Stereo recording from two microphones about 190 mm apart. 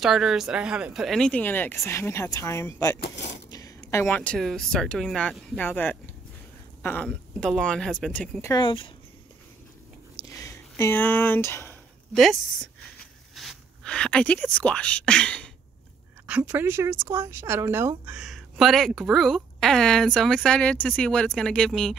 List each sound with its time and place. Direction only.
0.0 s speech: centre (ahead or behind); by 3.0 s 15° left (ahead or behind)
3.0 s speech: 65° left (ahead or behind)
3.4 s speech: 20° left (ahead or behind)
8.5 s speech: 25° left (ahead or behind)
10.2 s a sound: 15° left (ahead or behind)
12.2 s speech: centre (ahead or behind)
16.3 s speech: 10° right (ahead or behind)